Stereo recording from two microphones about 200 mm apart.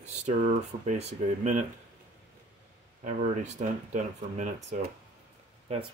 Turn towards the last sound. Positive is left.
turn(degrees=-30)  # may be behind; listen again after turning